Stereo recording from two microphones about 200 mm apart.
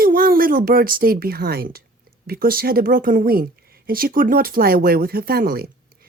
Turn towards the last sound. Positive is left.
turn(degrees=-50)  # may be behind; listen again after turning